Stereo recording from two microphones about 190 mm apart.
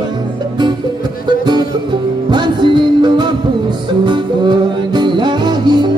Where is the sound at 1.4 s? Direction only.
20° right (ahead or behind).